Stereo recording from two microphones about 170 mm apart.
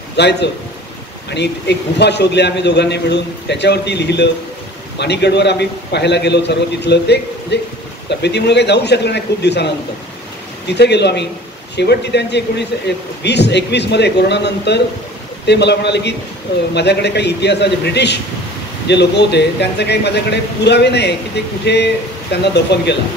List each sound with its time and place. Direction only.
0.1 s a man's voice: 85° left
10.7 s a man's voice: 80° left